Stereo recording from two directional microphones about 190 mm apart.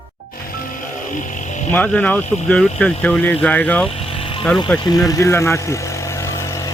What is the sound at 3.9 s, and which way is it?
Vehicle, 30° left (ahead or behind).